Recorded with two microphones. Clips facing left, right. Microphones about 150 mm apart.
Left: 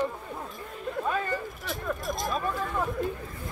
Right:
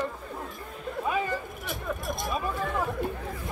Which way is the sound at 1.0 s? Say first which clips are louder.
Right 1 dB; 10° right (ahead or behind).